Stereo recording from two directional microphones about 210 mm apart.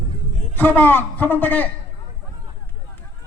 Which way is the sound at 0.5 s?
10° left (ahead or behind).